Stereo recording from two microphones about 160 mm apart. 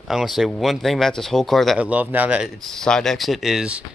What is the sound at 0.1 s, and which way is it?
Speech, centre (ahead or behind).